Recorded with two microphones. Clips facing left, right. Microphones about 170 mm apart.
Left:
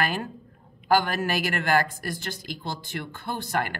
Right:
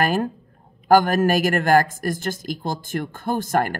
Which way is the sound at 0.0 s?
45° right (ahead or behind).